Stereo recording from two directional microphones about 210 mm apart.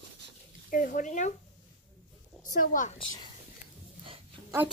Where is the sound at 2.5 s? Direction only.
40° left (ahead or behind).